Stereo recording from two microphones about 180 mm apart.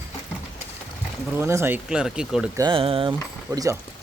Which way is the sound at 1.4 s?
15° right (ahead or behind).